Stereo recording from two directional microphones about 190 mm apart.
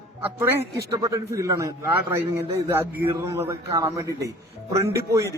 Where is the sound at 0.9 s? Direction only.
15° right (ahead or behind).